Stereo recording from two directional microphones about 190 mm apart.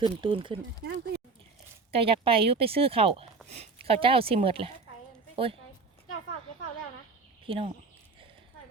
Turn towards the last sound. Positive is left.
turn(degrees=-25)  # may be behind; listen again after turning